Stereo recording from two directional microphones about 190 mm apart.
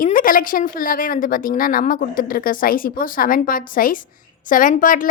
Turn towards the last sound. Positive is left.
turn(degrees=45)  # may be behind; listen again after turning